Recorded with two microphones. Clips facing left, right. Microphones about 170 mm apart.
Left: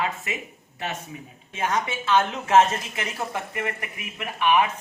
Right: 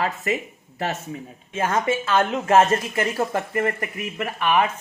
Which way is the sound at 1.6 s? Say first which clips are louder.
Right 3 dB; 50° right (ahead or behind).